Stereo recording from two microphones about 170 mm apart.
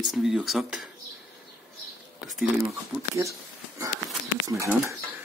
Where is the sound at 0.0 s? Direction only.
5° right (ahead or behind).